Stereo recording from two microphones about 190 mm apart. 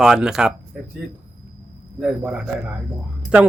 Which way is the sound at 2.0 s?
5° right (ahead or behind).